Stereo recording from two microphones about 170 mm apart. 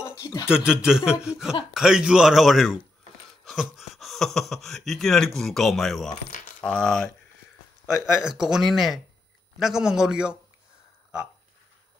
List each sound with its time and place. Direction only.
0.0 s speech: 20° left (ahead or behind)
0.7 s speech: 5° right (ahead or behind)